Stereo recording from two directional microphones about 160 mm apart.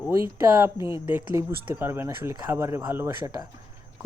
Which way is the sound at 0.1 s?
15° right (ahead or behind).